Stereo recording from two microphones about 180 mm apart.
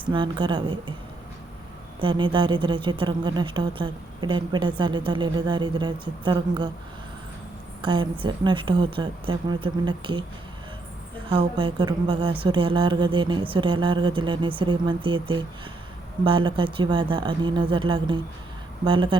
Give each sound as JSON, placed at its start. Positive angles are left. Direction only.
{"t": 0.1, "sound": "speech", "side_deg": -25}
{"t": 2.0, "sound": "speech", "side_deg": -25}
{"t": 7.8, "sound": "a woman's voice", "side_deg": -25}
{"t": 11.3, "sound": "speech", "side_deg": -25}